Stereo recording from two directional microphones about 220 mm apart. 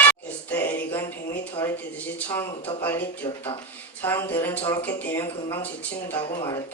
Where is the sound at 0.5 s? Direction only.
10° left (ahead or behind).